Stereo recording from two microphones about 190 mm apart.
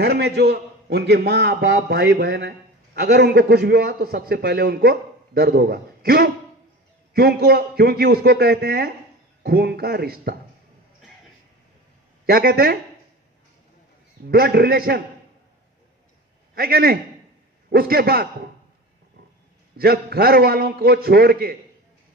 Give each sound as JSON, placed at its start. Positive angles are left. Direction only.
{"t": 0.0, "sound": "a man's voice", "side_deg": -60}
{"t": 12.3, "sound": "a man's voice", "side_deg": -55}
{"t": 14.3, "sound": "a man's voice", "side_deg": -55}
{"t": 16.5, "sound": "a man's voice", "side_deg": -55}
{"t": 19.8, "sound": "a man's voice", "side_deg": -55}